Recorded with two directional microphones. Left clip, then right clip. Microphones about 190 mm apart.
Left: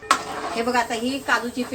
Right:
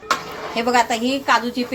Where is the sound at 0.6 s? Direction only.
20° right (ahead or behind).